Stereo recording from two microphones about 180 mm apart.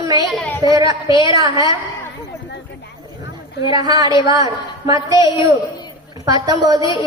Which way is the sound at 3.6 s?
20° right (ahead or behind).